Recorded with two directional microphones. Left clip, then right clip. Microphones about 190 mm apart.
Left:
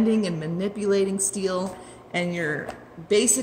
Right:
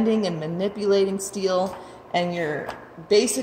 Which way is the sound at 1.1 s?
20° right (ahead or behind).